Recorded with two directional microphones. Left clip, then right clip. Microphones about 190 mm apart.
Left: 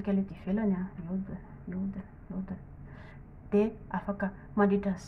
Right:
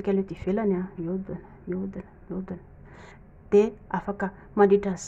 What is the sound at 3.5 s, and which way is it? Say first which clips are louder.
A woman's voice: right 8 dB; 40° right (ahead or behind).